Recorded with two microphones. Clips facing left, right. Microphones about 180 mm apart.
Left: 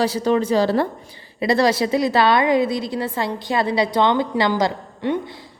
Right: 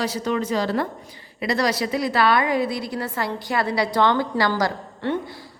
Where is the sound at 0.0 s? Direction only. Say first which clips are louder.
Left 5 dB; 30° left (ahead or behind).